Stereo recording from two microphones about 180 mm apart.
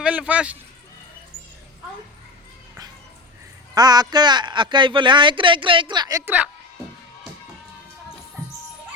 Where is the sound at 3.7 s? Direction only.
20° right (ahead or behind).